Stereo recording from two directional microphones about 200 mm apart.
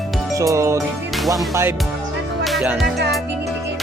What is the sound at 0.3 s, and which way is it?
Music, 15° right (ahead or behind).